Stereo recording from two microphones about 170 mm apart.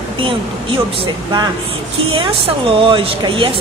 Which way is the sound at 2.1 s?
30° right (ahead or behind).